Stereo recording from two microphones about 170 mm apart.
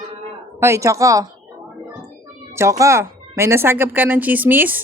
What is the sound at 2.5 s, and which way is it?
Speech, 15° right (ahead or behind).